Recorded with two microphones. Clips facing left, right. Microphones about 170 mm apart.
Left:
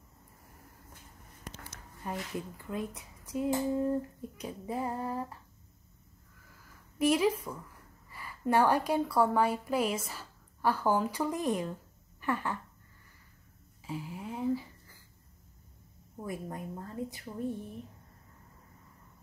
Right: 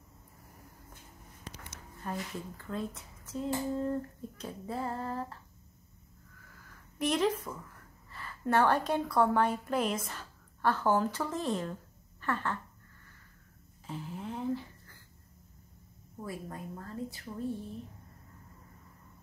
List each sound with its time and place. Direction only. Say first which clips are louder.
2.0 s speech: left 1 dB; 15° left (ahead or behind)
7.0 s a woman's voice: left 3 dB; 10° left (ahead or behind)
12.2 s a sound: left 1 dB; 15° left (ahead or behind)
13.8 s speech: left 1 dB; 5° left (ahead or behind)
16.2 s a woman's voice: left 2 dB; 20° left (ahead or behind)